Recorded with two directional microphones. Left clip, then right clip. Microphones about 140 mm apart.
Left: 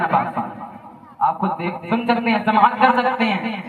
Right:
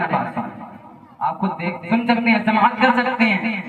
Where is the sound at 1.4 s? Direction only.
35° left (ahead or behind).